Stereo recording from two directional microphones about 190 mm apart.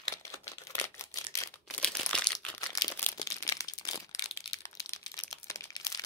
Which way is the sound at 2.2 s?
20° left (ahead or behind).